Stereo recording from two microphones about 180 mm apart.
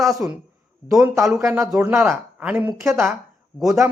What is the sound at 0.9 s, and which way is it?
Speech, 15° right (ahead or behind).